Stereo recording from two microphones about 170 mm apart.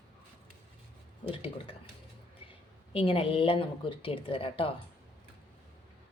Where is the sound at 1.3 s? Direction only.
35° left (ahead or behind).